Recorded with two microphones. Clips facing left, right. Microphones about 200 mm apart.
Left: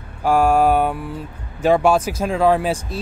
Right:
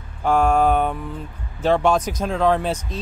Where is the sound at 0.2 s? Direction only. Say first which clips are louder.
Left 2 dB; 10° left (ahead or behind).